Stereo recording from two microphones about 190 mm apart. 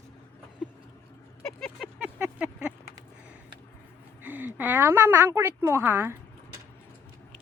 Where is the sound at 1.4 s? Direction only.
5° left (ahead or behind).